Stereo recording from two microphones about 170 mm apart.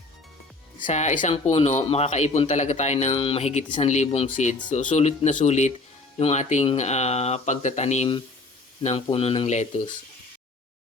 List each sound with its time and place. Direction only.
0.8 s speech: 45° left (ahead or behind)